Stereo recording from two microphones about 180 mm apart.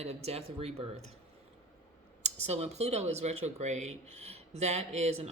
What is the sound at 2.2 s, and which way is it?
Speech, 35° right (ahead or behind).